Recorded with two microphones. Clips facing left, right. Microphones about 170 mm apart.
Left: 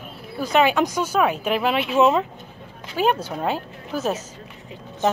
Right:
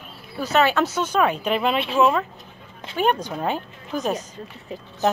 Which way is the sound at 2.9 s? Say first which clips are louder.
Left 1 dB; 10° left (ahead or behind).